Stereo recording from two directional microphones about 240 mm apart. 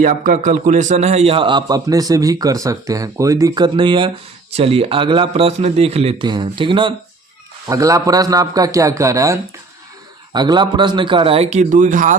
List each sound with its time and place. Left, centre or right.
0.0 s a man's voice: right